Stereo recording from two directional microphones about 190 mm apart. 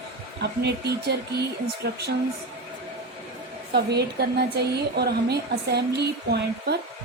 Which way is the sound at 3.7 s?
60° right (ahead or behind).